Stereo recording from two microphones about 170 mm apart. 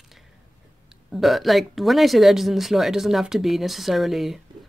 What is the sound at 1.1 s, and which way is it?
A woman's voice, centre (ahead or behind).